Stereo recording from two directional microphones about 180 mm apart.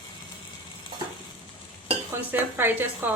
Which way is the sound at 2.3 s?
10° right (ahead or behind).